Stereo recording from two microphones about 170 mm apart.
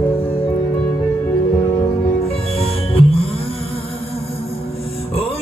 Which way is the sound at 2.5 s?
35° left (ahead or behind).